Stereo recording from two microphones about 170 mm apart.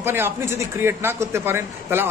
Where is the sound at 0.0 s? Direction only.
15° right (ahead or behind).